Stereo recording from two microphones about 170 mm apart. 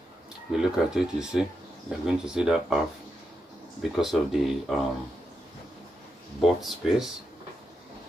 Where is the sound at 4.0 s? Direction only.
Centre (ahead or behind).